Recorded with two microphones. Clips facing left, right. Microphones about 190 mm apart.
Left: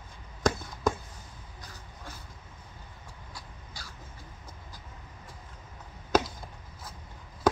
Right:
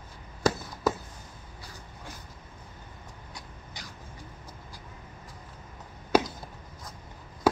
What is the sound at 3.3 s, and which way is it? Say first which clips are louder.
Cat: right 2 dB; 20° right (ahead or behind).